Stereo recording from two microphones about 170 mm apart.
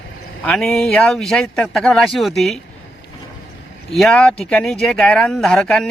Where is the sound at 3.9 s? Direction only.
5° left (ahead or behind).